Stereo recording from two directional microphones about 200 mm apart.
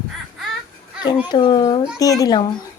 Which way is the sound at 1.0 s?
20° left (ahead or behind).